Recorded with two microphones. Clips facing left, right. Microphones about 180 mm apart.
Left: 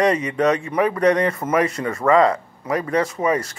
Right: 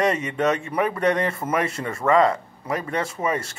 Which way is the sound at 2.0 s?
20° left (ahead or behind).